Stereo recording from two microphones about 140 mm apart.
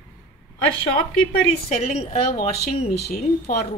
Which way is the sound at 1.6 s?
50° left (ahead or behind).